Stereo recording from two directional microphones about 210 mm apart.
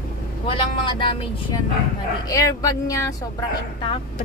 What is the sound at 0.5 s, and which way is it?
A woman's voice, 25° left (ahead or behind).